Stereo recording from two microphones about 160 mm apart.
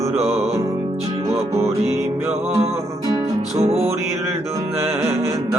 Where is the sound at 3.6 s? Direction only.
40° right (ahead or behind).